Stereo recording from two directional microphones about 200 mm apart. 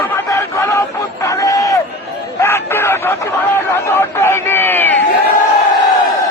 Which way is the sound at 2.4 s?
15° left (ahead or behind).